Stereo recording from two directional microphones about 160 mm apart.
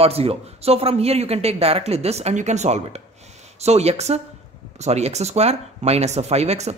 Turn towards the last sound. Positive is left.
turn(degrees=-40)  # may be behind; listen again after turning